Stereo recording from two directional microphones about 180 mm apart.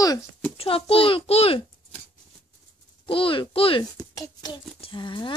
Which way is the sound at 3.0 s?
30° left (ahead or behind).